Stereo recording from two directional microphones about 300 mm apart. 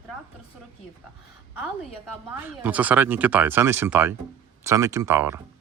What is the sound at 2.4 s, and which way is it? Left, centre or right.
Speech, centre.